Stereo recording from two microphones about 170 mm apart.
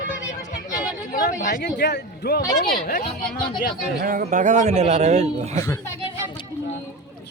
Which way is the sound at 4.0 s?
60° right (ahead or behind).